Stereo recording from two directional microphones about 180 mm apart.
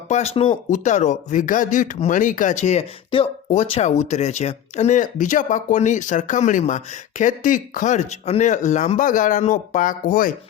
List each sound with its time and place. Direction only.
0.1 s speech: 40° left (ahead or behind)